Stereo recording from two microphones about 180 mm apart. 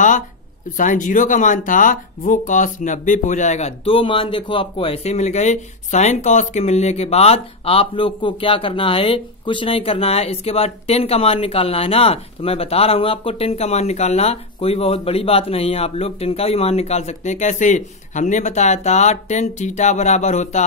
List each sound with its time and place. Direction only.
0.7 s speech: 45° left (ahead or behind)